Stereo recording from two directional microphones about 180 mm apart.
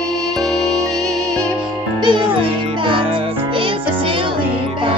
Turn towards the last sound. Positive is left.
turn(degrees=-30)  # may be behind; listen again after turning